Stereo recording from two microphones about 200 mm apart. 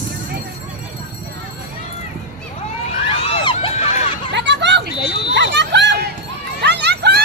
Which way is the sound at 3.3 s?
25° left (ahead or behind).